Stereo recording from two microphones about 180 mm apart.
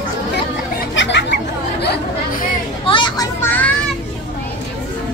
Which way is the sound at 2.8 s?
25° left (ahead or behind).